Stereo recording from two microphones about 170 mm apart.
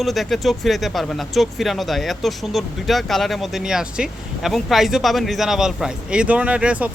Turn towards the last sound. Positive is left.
turn(degrees=-5)  # may be behind; listen again after turning